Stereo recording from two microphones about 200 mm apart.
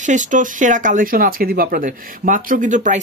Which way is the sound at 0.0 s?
40° right (ahead or behind).